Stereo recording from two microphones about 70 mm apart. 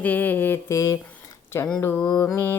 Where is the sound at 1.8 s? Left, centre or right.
Left.